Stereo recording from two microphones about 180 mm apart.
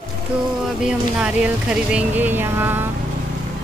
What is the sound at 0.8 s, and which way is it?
Speech, 5° right (ahead or behind).